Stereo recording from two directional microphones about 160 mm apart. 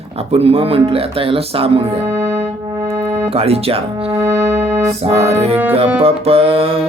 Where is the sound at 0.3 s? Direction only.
40° right (ahead or behind).